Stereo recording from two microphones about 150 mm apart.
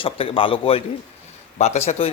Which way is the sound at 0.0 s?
35° left (ahead or behind).